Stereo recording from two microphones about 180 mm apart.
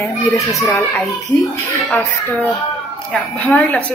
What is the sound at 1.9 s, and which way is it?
A woman's voice, 10° left (ahead or behind).